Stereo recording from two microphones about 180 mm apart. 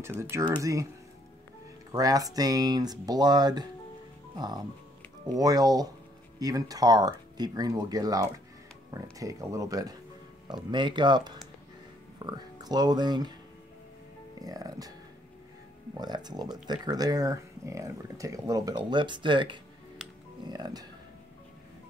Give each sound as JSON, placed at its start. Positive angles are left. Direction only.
{"t": 0.0, "sound": "speech", "side_deg": -15}
{"t": 1.9, "sound": "speech", "side_deg": -20}
{"t": 14.4, "sound": "speech", "side_deg": -20}
{"t": 16.0, "sound": "speech", "side_deg": -25}